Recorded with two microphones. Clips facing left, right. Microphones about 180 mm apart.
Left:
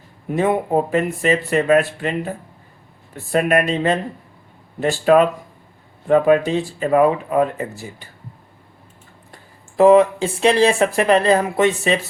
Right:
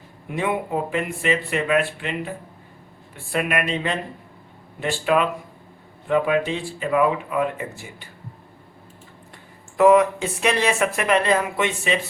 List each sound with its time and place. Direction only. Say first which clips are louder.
0.3 s speech: left 6 dB; 40° left (ahead or behind)
3.3 s speech: left 6 dB; 40° left (ahead or behind)
9.7 s speech: left 4 dB; 30° left (ahead or behind)